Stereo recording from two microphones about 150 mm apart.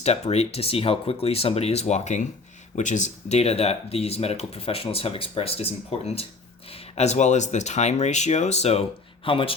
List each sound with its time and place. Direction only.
0.0 s speech: 45° left (ahead or behind)
9.2 s speech: 35° left (ahead or behind)